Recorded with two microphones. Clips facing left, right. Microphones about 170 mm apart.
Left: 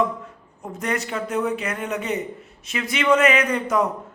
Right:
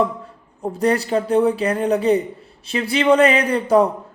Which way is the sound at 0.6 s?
35° right (ahead or behind).